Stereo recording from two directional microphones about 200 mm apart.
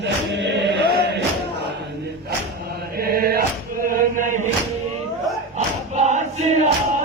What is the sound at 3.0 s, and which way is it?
Music, 50° right (ahead or behind).